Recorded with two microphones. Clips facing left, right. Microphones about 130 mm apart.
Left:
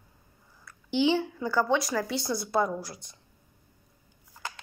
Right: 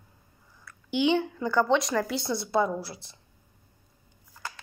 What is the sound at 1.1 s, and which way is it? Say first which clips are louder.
Speech: right 2 dB; 5° left (ahead or behind).